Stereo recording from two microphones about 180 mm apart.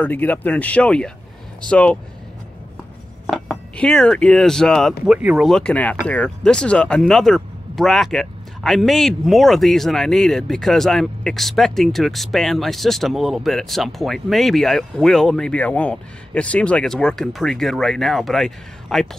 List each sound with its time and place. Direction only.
0.0 s speech: 10° left (ahead or behind)
3.3 s speech: 5° left (ahead or behind)